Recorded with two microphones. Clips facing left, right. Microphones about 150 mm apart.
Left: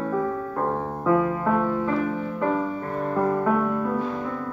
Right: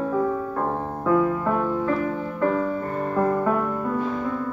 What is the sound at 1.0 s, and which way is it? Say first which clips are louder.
Music: right 1 dB; 5° left (ahead or behind).